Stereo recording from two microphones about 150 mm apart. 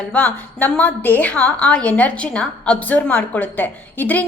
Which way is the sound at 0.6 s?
10° left (ahead or behind).